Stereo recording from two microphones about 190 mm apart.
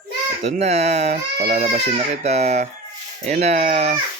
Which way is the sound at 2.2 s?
35° right (ahead or behind).